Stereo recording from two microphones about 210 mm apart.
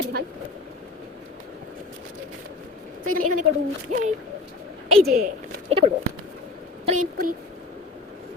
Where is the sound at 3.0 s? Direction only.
40° right (ahead or behind).